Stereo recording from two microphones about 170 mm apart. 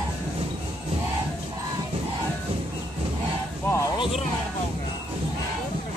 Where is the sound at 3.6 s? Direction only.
20° left (ahead or behind).